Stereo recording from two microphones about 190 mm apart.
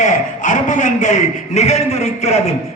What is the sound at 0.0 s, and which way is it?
A man's voice, 40° left (ahead or behind).